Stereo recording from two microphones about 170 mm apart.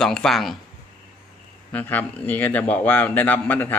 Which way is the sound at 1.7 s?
10° left (ahead or behind).